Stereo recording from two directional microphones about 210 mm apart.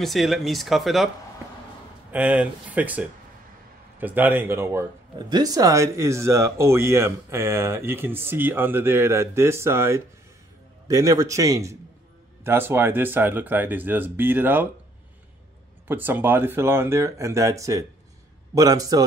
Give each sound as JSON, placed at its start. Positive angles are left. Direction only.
{"t": 0.0, "sound": "speech", "side_deg": 0}
{"t": 2.1, "sound": "speech", "side_deg": -5}
{"t": 15.9, "sound": "speech", "side_deg": -10}